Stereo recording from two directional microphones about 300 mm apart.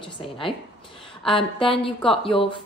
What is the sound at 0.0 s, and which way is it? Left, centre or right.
Speech, centre.